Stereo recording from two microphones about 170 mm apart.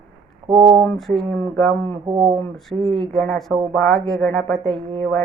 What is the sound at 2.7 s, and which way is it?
Speech, 30° right (ahead or behind).